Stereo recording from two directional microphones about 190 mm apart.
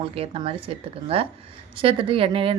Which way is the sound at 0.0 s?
30° right (ahead or behind).